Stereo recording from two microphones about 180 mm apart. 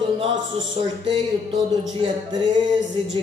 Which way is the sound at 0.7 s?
30° right (ahead or behind).